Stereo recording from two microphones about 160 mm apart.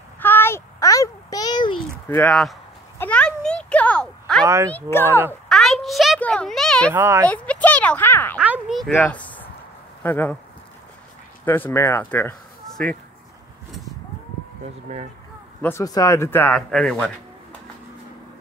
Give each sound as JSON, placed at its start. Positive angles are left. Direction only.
{"t": 0.2, "sound": "a sound", "side_deg": 15}
{"t": 2.0, "sound": "speech", "side_deg": 15}
{"t": 3.0, "sound": "a sound", "side_deg": 5}
{"t": 4.5, "sound": "speech", "side_deg": -20}
{"t": 4.7, "sound": "speech", "side_deg": 15}
{"t": 5.5, "sound": "a sound", "side_deg": 0}
{"t": 6.9, "sound": "speech", "side_deg": -15}
{"t": 7.2, "sound": "speech", "side_deg": 10}
{"t": 8.4, "sound": "a sound", "side_deg": -5}
{"t": 8.9, "sound": "speech", "side_deg": 10}
{"t": 11.4, "sound": "speech", "side_deg": 15}
{"t": 14.9, "sound": "speech", "side_deg": -45}
{"t": 15.6, "sound": "speech", "side_deg": 20}